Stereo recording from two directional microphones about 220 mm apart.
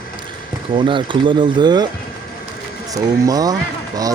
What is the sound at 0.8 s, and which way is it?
Speech, 20° right (ahead or behind).